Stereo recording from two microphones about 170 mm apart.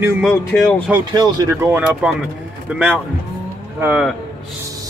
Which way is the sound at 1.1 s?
25° right (ahead or behind).